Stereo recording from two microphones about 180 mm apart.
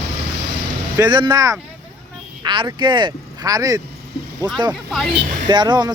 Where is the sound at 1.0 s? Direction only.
25° right (ahead or behind).